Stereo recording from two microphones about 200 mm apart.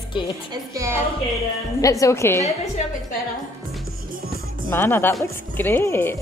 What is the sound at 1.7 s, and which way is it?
Speech, 15° left (ahead or behind).